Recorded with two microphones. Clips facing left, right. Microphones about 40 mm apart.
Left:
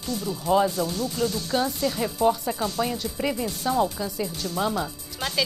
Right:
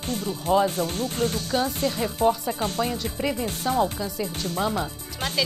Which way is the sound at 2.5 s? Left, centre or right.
Right.